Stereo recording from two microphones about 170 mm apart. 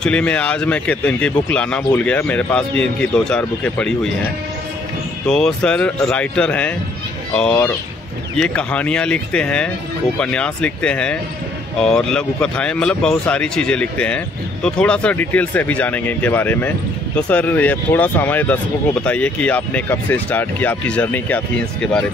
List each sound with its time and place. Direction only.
0.0 s speech: 5° left (ahead or behind)